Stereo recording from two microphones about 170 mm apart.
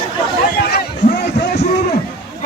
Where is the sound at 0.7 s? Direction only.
85° left.